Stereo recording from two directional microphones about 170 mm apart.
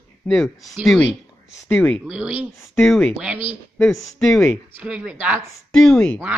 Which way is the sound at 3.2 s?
10° right (ahead or behind).